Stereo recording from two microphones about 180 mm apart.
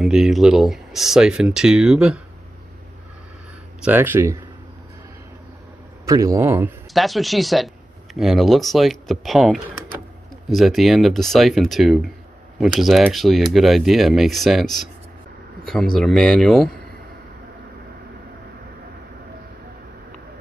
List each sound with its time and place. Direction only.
0.0 s speech: centre (ahead or behind)
3.8 s a man's voice: 10° right (ahead or behind)
6.0 s a man's voice: 20° right (ahead or behind)
6.9 s speech: centre (ahead or behind)